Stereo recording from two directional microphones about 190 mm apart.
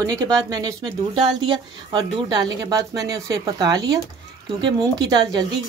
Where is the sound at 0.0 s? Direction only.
20° right (ahead or behind).